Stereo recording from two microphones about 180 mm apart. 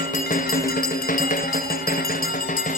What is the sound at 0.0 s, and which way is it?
Music, 50° left (ahead or behind).